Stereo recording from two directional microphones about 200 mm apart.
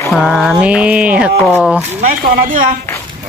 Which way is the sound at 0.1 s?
Centre (ahead or behind).